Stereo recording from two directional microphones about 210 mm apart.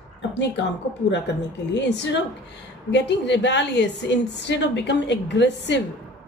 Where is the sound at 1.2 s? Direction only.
55° left (ahead or behind).